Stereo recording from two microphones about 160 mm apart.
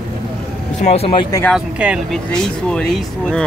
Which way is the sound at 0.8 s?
40° left (ahead or behind).